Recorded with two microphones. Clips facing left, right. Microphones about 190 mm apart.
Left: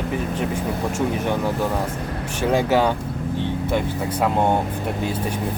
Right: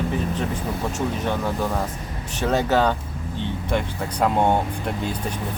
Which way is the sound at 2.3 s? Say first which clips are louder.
Left 1 dB; 10° left (ahead or behind).